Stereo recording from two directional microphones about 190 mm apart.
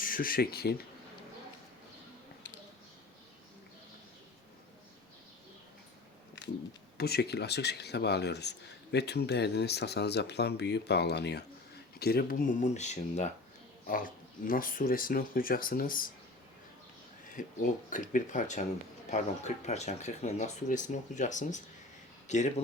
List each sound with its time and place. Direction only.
0.0 s speech: 50° left (ahead or behind)
6.9 s speech: 55° left (ahead or behind); by 13.3 s 35° left (ahead or behind)
13.8 s speech: 45° left (ahead or behind)
17.3 s speech: 45° left (ahead or behind)